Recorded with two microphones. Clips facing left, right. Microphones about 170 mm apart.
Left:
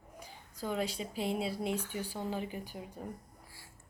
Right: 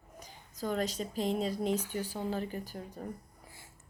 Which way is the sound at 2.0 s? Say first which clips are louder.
Right 2 dB; 10° right (ahead or behind).